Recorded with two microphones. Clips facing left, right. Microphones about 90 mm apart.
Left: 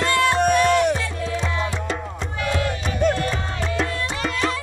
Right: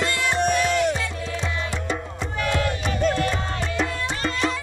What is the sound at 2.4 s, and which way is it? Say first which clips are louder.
Music: even; 15° left (ahead or behind).